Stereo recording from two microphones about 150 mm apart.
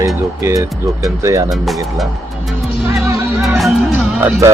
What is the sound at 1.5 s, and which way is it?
Speech, centre (ahead or behind).